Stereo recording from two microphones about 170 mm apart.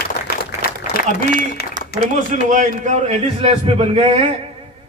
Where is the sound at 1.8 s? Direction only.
60° left (ahead or behind).